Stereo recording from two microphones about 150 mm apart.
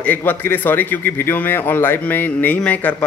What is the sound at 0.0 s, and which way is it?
A man's voice, 10° left (ahead or behind).